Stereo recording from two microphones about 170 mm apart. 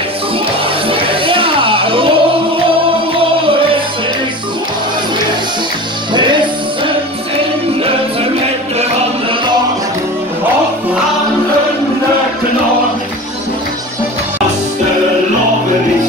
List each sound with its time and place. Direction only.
0.8 s music: 30° right (ahead or behind)